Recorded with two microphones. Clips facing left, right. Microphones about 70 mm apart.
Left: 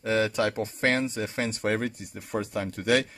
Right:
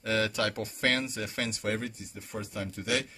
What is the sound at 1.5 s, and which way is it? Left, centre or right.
Speech, left.